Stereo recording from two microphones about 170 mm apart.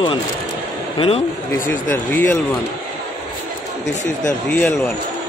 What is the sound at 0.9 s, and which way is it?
Speech, 35° left (ahead or behind).